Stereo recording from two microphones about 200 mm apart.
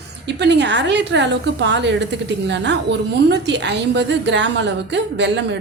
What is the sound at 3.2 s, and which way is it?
A woman's voice, 60° right (ahead or behind).